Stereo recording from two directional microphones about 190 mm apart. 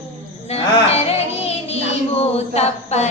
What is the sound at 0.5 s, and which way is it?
Music, 35° left (ahead or behind).